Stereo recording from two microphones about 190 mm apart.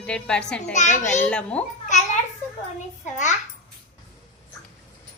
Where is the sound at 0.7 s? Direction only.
40° left (ahead or behind).